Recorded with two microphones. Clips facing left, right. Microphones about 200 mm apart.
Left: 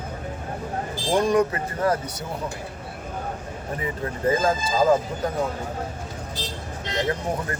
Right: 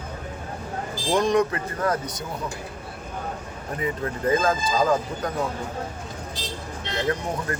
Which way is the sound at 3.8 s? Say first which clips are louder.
Even; 25° left (ahead or behind).